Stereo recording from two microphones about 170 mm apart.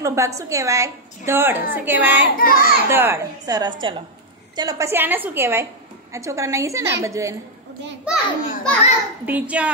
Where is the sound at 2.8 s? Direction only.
15° right (ahead or behind).